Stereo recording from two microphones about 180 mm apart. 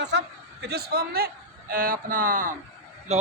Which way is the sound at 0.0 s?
70° right (ahead or behind).